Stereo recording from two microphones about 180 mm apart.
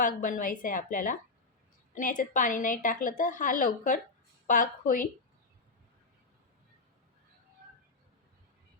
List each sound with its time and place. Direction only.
0.0 s a woman's voice: 45° left (ahead or behind)